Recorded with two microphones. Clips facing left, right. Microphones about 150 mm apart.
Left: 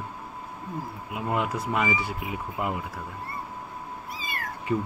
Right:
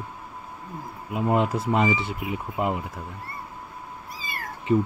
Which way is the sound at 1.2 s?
30° right (ahead or behind).